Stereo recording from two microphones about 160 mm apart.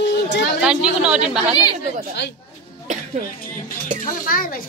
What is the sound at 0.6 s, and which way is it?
Speech, 5° right (ahead or behind).